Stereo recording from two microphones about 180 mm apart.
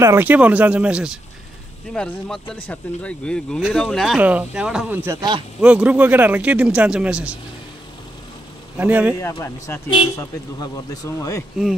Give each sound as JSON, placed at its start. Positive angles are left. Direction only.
{"t": 0.0, "sound": "speech", "side_deg": -15}
{"t": 5.6, "sound": "speech", "side_deg": -5}
{"t": 8.7, "sound": "speech", "side_deg": -10}
{"t": 9.3, "sound": "speech", "side_deg": 15}